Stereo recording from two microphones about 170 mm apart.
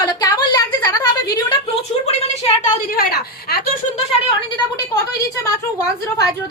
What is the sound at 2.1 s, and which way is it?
Speech, 40° left (ahead or behind).